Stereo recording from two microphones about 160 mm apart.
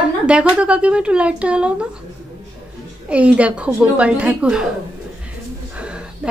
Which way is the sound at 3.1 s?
10° right (ahead or behind).